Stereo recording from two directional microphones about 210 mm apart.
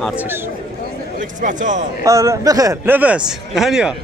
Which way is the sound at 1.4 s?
35° right (ahead or behind).